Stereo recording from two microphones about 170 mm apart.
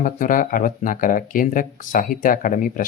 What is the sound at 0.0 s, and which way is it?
Speech, 50° left (ahead or behind).